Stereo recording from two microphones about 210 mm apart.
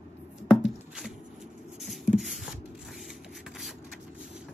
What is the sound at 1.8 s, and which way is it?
Beatboxing, centre (ahead or behind).